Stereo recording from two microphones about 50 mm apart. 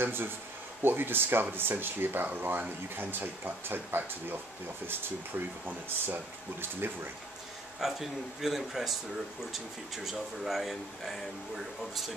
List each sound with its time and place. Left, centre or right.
0.0 s speech: right
5.9 s speech: right
7.8 s speech: centre
10.0 s speech: centre